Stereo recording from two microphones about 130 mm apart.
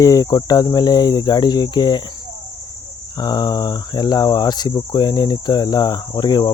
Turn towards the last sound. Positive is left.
turn(degrees=35)  # may be behind; listen again after turning